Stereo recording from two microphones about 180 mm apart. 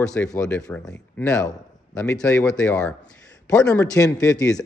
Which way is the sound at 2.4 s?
5° left (ahead or behind).